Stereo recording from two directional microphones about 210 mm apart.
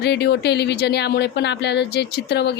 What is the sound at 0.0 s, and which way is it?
A woman's voice, 55° left (ahead or behind).